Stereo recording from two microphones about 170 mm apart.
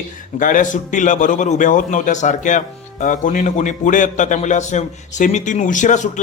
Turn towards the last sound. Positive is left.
turn(degrees=45)  # may be behind; listen again after turning